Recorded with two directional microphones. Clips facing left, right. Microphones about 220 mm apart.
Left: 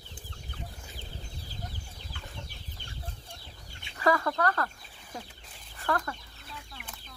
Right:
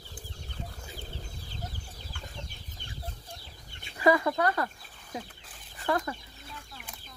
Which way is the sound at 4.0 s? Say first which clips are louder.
Right 3 dB; 10° right (ahead or behind).